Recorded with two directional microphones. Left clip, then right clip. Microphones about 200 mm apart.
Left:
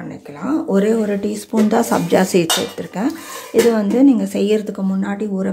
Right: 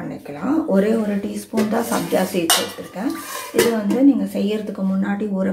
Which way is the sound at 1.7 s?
55° left (ahead or behind).